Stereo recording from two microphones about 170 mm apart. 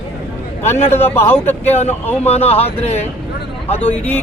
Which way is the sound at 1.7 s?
40° left (ahead or behind).